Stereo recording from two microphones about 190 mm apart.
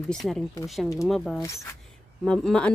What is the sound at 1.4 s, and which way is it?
Speech, 15° left (ahead or behind).